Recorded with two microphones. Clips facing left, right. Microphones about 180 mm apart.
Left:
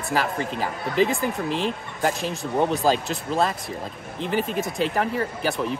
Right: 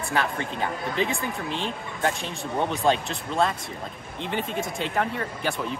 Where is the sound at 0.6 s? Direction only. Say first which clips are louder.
Left 5 dB; centre (ahead or behind).